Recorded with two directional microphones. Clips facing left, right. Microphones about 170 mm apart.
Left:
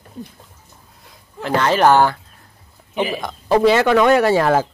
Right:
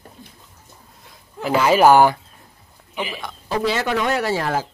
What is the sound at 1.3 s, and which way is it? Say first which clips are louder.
Speech: right 1 dB; 5° right (ahead or behind).